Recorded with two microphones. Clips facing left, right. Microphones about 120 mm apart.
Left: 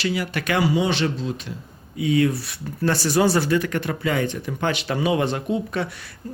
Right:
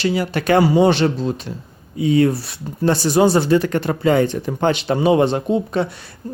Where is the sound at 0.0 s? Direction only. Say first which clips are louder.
Right 5 dB; 30° right (ahead or behind).